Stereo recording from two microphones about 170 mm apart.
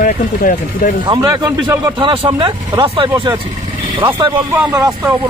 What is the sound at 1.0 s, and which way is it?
Speech, 25° right (ahead or behind).